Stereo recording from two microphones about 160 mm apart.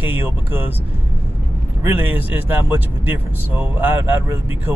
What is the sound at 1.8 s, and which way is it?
Speech, 10° right (ahead or behind).